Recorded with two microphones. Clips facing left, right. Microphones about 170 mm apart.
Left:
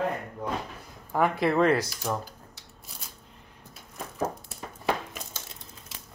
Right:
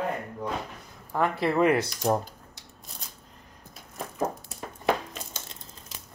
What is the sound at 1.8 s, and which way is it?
Speech, 35° right (ahead or behind).